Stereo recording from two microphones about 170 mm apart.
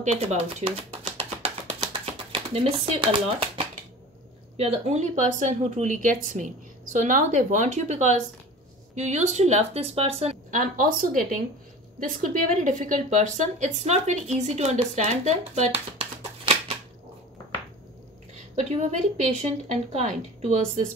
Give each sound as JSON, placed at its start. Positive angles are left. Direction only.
{"t": 0.0, "sound": "a sound", "side_deg": -40}
{"t": 2.3, "sound": "a woman's voice", "side_deg": -35}
{"t": 18.6, "sound": "speech", "side_deg": -40}